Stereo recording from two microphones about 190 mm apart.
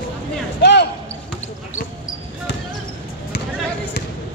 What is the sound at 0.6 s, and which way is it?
Basketball bounce, 60° left (ahead or behind).